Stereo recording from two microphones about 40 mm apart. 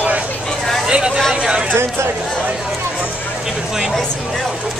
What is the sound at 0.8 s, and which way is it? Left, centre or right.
Speech, right.